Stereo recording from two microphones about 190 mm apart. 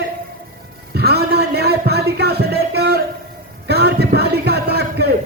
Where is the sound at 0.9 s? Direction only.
60° right (ahead or behind).